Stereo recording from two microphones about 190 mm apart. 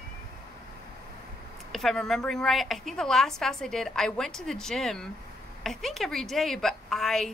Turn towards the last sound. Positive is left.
turn(degrees=0)  # may be behind; listen again after turning